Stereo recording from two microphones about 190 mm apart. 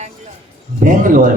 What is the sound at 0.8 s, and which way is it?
Speech, 45° right (ahead or behind).